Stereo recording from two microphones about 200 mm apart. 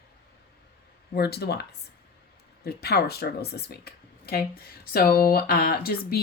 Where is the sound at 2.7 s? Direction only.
50° left (ahead or behind).